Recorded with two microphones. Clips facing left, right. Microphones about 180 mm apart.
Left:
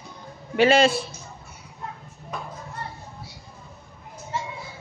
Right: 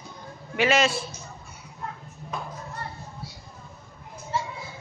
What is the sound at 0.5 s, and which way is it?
Speech, 30° left (ahead or behind).